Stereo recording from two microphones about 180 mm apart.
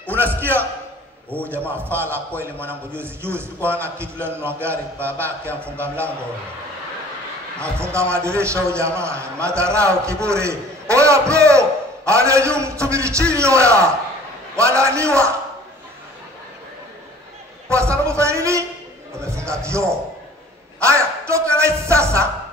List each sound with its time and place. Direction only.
0.0 s music: 10° right (ahead or behind)
1.3 s a man's voice: 10° left (ahead or behind)
1.7 s a man's voice: 10° right (ahead or behind)
7.8 s a man's voice: 15° right (ahead or behind)
17.6 s a man's voice: 15° right (ahead or behind)
19.1 s music: 15° right (ahead or behind)
20.8 s a sound: 15° right (ahead or behind)